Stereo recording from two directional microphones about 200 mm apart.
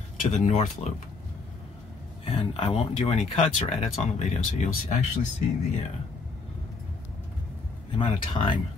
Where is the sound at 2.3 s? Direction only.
30° left (ahead or behind).